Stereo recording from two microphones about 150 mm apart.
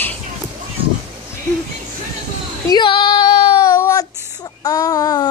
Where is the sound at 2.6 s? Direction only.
30° left (ahead or behind).